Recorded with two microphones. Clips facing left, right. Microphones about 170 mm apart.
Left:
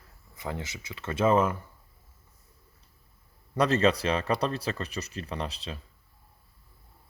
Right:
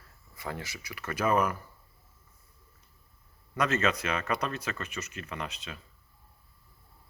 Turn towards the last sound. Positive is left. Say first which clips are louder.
# left 4 dB
turn(degrees=35)  # may be behind; listen again after turning